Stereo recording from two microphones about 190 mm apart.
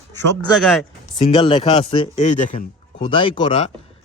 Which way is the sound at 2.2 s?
40° left (ahead or behind).